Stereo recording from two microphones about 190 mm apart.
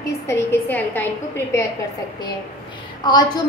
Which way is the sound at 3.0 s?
25° left (ahead or behind).